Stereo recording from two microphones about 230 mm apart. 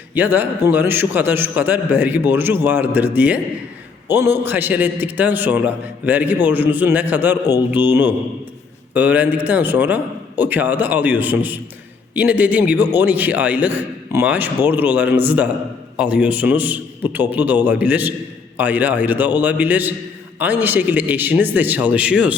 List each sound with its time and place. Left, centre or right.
0.1 s a man's voice: centre